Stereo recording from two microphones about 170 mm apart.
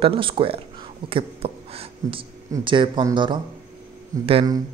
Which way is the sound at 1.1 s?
35° right (ahead or behind).